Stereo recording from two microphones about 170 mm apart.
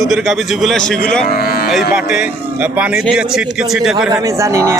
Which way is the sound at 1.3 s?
65° left (ahead or behind).